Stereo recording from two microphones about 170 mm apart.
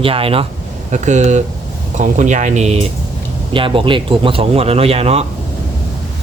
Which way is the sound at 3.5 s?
30° right (ahead or behind).